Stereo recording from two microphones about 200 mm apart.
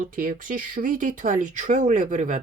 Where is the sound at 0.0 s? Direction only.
45° right (ahead or behind).